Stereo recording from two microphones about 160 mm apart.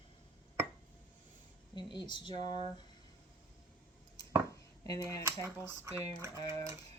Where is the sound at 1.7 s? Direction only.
30° left (ahead or behind).